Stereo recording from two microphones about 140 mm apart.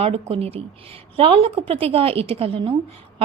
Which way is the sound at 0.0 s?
45° right (ahead or behind).